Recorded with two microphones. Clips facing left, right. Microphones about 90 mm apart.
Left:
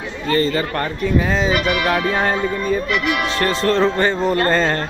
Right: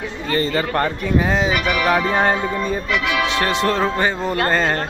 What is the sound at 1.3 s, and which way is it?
Music, 15° right (ahead or behind).